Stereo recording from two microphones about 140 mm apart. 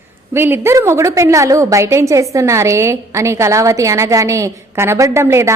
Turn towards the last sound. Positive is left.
turn(degrees=-20)  # may be behind; listen again after turning